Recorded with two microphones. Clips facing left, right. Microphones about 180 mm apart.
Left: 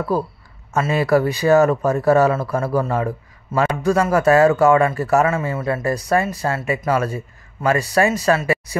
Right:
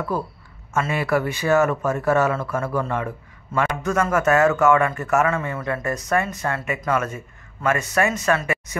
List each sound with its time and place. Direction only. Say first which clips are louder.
0.7 s speech: left 5 dB; 35° left (ahead or behind)